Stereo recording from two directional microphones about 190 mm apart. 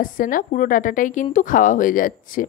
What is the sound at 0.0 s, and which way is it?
A woman's voice, 45° left (ahead or behind).